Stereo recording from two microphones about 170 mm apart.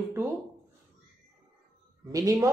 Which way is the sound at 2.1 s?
20° right (ahead or behind).